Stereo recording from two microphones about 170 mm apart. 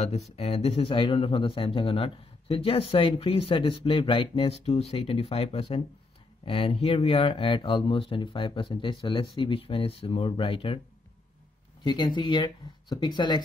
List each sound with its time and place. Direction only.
0.4 s speech: 35° left (ahead or behind)
11.8 s speech: 25° left (ahead or behind)